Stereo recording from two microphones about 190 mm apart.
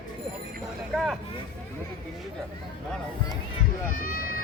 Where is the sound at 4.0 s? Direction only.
50° left (ahead or behind).